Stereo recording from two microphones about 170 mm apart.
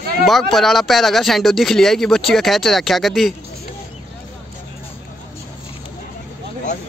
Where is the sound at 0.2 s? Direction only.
Centre (ahead or behind).